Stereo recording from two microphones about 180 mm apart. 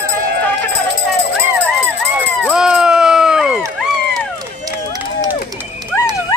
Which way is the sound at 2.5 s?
5° right (ahead or behind).